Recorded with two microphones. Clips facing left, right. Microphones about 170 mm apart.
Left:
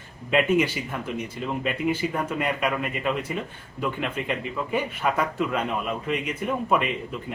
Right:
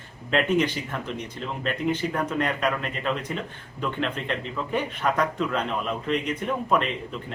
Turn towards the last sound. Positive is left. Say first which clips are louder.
# even
turn(degrees=10)  # may be behind; listen again after turning